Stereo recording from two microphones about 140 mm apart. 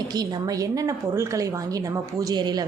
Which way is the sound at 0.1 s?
30° right (ahead or behind).